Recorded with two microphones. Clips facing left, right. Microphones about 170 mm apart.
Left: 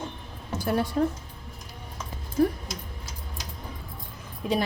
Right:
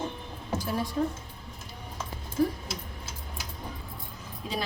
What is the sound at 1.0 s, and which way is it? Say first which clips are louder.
Speech: left 3 dB; 65° left (ahead or behind).